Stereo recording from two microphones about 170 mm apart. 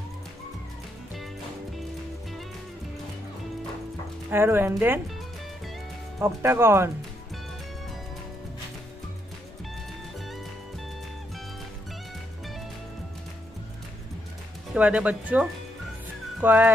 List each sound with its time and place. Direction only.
4.3 s speech: 15° right (ahead or behind)
6.1 s speech: 15° right (ahead or behind)
14.7 s speech: 5° right (ahead or behind)